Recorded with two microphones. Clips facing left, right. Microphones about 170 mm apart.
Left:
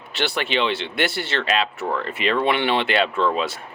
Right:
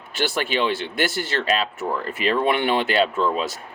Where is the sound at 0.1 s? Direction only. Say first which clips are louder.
Even; 45° right (ahead or behind).